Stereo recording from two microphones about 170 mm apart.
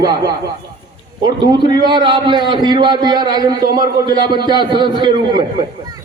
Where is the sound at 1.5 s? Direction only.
25° right (ahead or behind).